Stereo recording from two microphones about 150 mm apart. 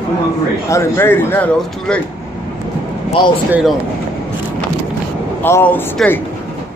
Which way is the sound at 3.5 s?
5° right (ahead or behind).